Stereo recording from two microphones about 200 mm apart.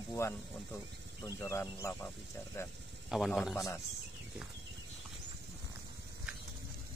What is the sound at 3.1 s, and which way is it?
Speech, centre (ahead or behind).